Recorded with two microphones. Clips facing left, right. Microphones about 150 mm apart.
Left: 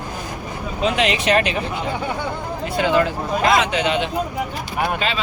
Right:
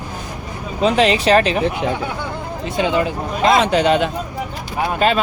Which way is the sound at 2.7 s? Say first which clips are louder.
Even; 20° right (ahead or behind).